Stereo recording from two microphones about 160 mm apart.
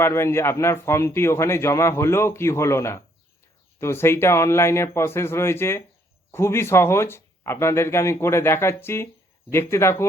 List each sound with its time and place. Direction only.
0.0 s a man's voice: 15° left (ahead or behind)